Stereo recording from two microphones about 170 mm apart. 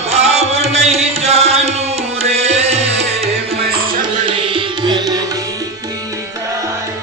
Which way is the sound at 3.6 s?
60° right (ahead or behind).